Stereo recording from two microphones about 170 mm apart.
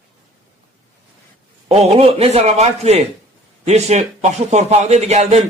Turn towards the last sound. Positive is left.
turn(degrees=-40)  # may be behind; listen again after turning